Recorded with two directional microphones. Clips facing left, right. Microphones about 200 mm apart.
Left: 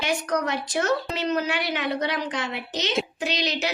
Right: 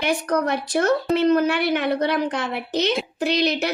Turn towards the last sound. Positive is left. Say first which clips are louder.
# right 6 dB
turn(degrees=-60)  # may be behind; listen again after turning